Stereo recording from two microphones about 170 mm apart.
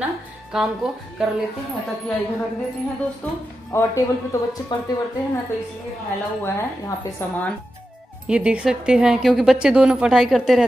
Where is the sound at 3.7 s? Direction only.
20° left (ahead or behind).